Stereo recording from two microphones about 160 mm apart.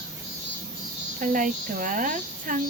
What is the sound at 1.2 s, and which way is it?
A child's voice, 55° right (ahead or behind).